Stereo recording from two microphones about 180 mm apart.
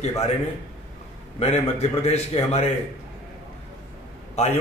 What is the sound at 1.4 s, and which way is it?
Speech, 35° left (ahead or behind).